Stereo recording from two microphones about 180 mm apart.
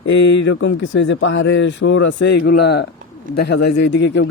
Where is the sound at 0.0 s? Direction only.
90° left.